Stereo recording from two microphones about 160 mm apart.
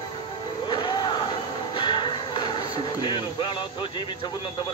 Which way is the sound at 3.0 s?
30° left (ahead or behind).